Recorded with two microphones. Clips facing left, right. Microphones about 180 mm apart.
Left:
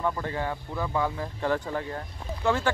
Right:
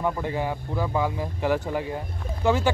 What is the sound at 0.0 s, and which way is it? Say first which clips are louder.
Speech: right 3 dB; 15° right (ahead or behind).